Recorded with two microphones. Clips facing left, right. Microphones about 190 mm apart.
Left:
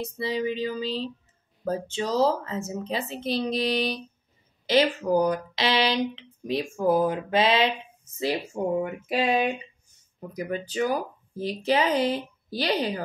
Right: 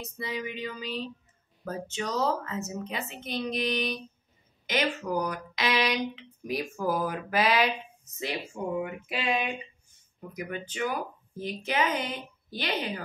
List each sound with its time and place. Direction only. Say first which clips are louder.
0.0 s speech: left 7 dB; 30° left (ahead or behind)
8.8 s speech: left 6 dB; 40° left (ahead or behind)